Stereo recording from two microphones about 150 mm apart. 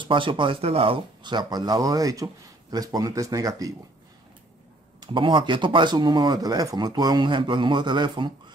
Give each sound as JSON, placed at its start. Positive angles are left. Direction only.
{"t": 0.0, "sound": "speech", "side_deg": -35}
{"t": 5.0, "sound": "speech", "side_deg": -35}